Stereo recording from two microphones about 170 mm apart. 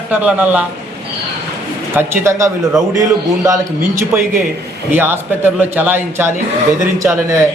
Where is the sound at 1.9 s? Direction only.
15° right (ahead or behind).